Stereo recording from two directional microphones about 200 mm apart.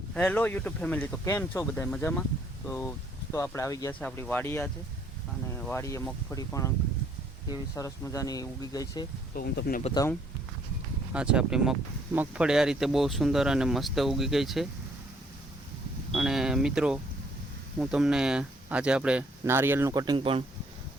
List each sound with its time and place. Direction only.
0.1 s speech: 5° left (ahead or behind)
9.3 s speech: 50° left (ahead or behind)
9.8 s speech: 20° left (ahead or behind)
11.1 s a man's voice: 5° right (ahead or behind)
16.1 s a sound: centre (ahead or behind)
17.7 s speech: 5° right (ahead or behind); by 20.4 s 25° right (ahead or behind)